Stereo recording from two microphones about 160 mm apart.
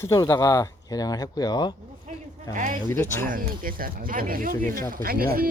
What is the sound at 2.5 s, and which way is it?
Speech, 50° right (ahead or behind).